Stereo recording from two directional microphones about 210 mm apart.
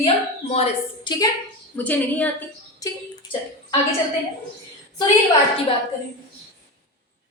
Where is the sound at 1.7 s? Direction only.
10° left (ahead or behind).